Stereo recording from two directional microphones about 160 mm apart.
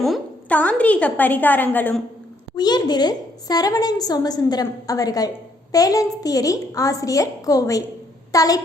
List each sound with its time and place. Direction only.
0.0 s a woman's voice: 5° left (ahead or behind)
2.6 s a woman's voice: 25° left (ahead or behind)